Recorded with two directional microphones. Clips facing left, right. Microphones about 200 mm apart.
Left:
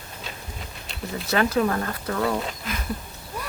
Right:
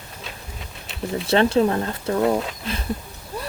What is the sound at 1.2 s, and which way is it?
Speech, 30° right (ahead or behind).